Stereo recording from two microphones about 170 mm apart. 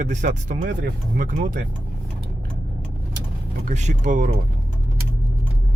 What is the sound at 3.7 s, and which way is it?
Speech, 45° right (ahead or behind).